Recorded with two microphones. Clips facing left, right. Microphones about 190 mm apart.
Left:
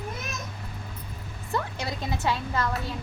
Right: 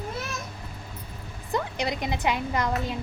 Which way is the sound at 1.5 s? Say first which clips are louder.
Right 3 dB; 20° right (ahead or behind).